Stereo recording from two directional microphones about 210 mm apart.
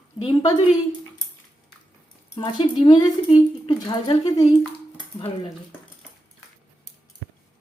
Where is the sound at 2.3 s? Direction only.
25° left (ahead or behind).